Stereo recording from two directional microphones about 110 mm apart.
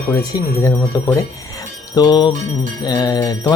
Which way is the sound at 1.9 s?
40° left (ahead or behind).